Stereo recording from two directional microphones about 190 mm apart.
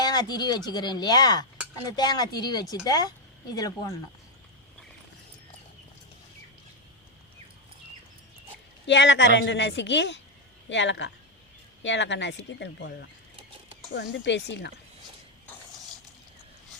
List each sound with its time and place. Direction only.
0.0 s speech: 20° left (ahead or behind)
8.9 s a man's voice: 70° left (ahead or behind)